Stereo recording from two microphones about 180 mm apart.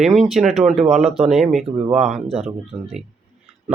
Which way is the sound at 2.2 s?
35° right (ahead or behind).